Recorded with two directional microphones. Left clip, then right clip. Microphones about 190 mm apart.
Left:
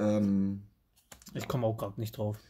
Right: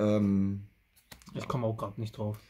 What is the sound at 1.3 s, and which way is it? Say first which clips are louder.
Speech: left 1 dB; 15° left (ahead or behind).